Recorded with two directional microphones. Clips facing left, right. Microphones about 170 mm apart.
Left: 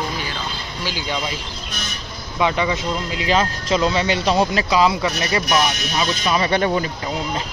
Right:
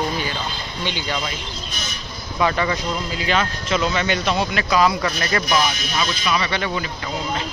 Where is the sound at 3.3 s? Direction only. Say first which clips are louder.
Left 3 dB; 35° left (ahead or behind).